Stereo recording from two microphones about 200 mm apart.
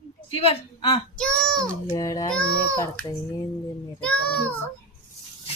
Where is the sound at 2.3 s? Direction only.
5° left (ahead or behind).